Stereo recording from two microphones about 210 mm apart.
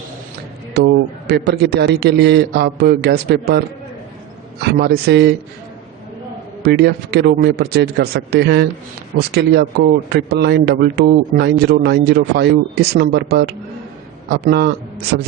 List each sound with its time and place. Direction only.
0.8 s speech: 50° right (ahead or behind)
4.6 s speech: 50° right (ahead or behind)
6.6 s speech: 50° right (ahead or behind)